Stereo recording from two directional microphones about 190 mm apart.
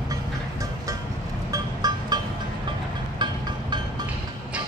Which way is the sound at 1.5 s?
20° right (ahead or behind).